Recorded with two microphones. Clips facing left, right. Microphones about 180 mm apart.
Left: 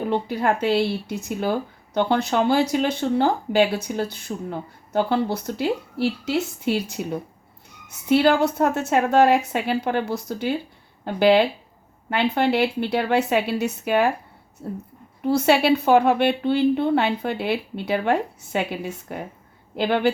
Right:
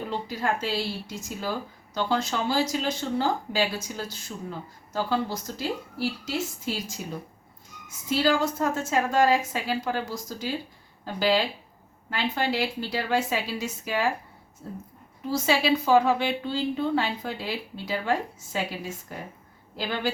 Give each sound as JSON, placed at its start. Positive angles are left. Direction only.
{"t": 0.1, "sound": "speech", "side_deg": 65}